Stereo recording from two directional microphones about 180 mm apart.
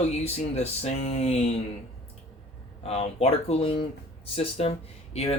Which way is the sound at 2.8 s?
35° left (ahead or behind).